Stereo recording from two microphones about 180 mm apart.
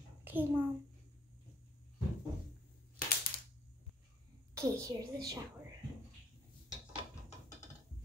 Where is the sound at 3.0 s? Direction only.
55° left (ahead or behind).